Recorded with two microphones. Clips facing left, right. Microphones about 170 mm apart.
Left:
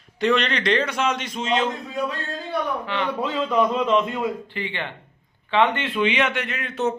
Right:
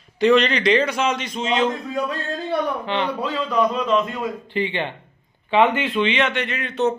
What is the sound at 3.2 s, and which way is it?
A man's voice, 20° left (ahead or behind).